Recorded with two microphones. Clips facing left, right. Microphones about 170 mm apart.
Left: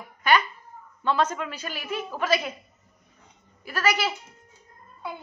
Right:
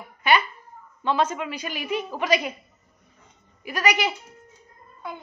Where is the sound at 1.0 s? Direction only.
10° right (ahead or behind).